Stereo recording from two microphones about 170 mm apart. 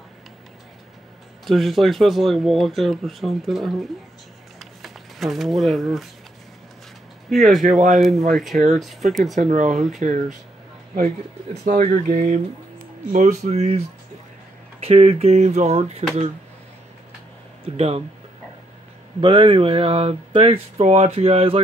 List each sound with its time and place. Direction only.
1.4 s speech: centre (ahead or behind)
4.6 s a sound: centre (ahead or behind)
7.2 s speech: centre (ahead or behind)
9.4 s speech: 45° right (ahead or behind)
17.7 s speech: 35° right (ahead or behind)
19.2 s speech: 30° right (ahead or behind)